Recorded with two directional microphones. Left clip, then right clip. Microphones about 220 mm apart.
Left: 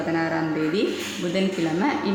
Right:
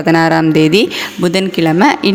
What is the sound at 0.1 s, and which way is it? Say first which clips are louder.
Speech: right 16 dB; 50° right (ahead or behind).